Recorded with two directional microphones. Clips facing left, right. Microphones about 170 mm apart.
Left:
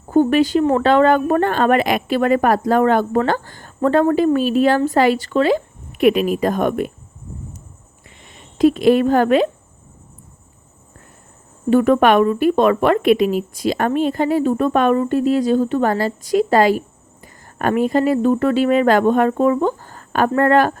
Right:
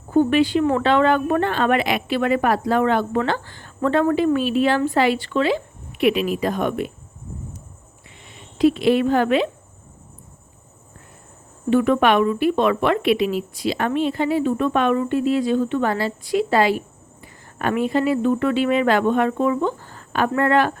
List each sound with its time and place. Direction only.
0.1 s speech: 40° left (ahead or behind)
8.5 s speech: 45° left (ahead or behind)
11.7 s speech: 45° left (ahead or behind)